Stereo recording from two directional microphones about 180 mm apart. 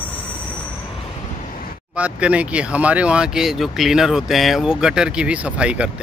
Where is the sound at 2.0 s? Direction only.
5° right (ahead or behind).